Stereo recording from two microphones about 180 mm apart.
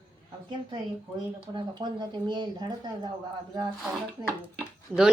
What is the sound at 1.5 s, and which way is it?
Speech, 25° right (ahead or behind).